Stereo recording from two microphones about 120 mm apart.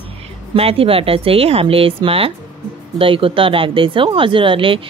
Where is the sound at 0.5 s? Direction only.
55° right (ahead or behind).